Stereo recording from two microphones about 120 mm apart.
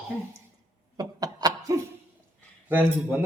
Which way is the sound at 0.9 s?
30° right (ahead or behind).